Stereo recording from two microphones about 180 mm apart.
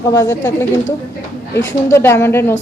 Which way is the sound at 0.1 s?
15° left (ahead or behind).